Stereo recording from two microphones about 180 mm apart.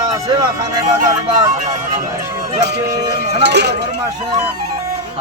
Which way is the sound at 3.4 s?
70° right (ahead or behind).